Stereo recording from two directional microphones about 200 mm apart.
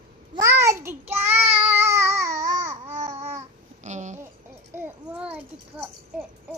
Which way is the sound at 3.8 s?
35° right (ahead or behind).